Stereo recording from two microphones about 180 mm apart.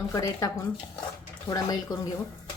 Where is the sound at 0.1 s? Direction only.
15° left (ahead or behind).